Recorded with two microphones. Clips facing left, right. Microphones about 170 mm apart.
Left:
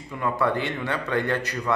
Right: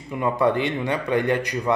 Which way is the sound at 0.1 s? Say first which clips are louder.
Right 4 dB; 20° right (ahead or behind).